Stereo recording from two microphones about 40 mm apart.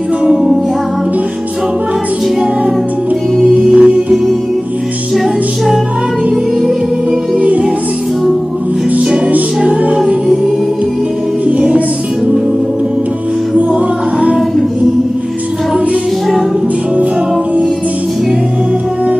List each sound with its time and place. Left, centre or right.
0.2 s music: right
3.4 s music: right
7.3 s music: right
8.9 s music: right
9.9 s music: right
13.6 s music: right